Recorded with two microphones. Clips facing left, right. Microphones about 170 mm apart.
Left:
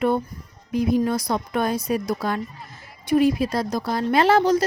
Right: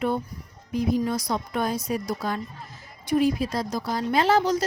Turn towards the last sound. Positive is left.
turn(degrees=60)  # may be behind; listen again after turning